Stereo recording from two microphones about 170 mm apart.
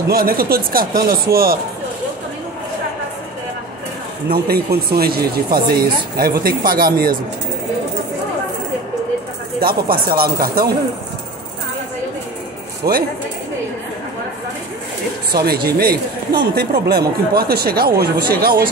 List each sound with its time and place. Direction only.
0.1 s speech: 60° right (ahead or behind)
4.6 s speech: 65° right (ahead or behind)
9.6 s speech: 60° right (ahead or behind)
12.8 s speech: 20° right (ahead or behind)
15.3 s speech: 65° right (ahead or behind)